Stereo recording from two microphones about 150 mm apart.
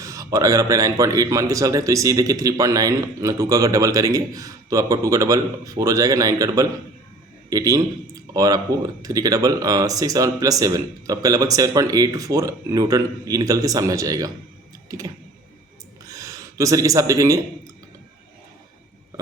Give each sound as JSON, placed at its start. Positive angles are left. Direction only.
{"t": 0.0, "sound": "speech", "side_deg": -20}
{"t": 14.8, "sound": "a sound", "side_deg": -25}
{"t": 16.0, "sound": "speech", "side_deg": -20}